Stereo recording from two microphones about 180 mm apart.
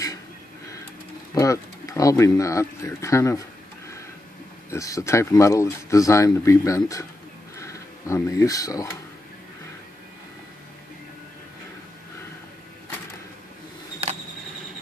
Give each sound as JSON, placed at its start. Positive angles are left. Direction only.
{"t": 1.3, "sound": "speech", "side_deg": 20}
{"t": 4.6, "sound": "speech", "side_deg": 15}